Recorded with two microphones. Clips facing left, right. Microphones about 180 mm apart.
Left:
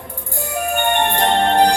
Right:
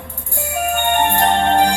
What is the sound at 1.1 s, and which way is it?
Music, 35° left (ahead or behind).